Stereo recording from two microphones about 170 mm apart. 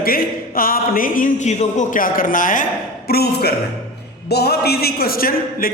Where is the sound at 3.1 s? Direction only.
70° left (ahead or behind).